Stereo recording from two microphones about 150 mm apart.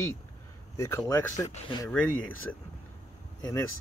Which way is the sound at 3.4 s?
20° left (ahead or behind).